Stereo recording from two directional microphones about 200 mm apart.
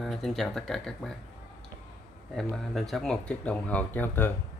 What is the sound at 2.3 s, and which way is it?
Speech, centre (ahead or behind).